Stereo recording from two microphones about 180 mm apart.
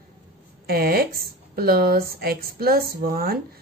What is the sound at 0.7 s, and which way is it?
Speech, 60° right (ahead or behind).